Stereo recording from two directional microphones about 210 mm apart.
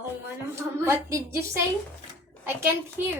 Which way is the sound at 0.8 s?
15° right (ahead or behind).